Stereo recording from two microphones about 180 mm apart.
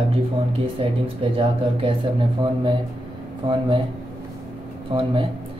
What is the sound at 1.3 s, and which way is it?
Speech, 30° right (ahead or behind).